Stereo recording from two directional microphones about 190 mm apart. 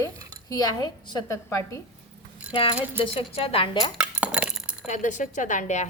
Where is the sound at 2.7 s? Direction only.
10° right (ahead or behind).